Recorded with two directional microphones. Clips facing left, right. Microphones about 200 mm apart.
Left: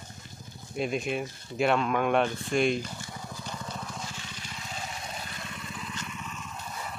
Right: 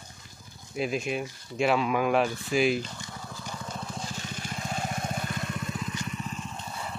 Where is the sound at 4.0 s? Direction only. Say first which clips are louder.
Right 4 dB; 45° right (ahead or behind).